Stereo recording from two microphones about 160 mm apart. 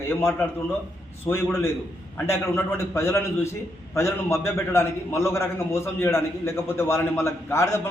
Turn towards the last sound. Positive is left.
turn(degrees=15)  # may be behind; listen again after turning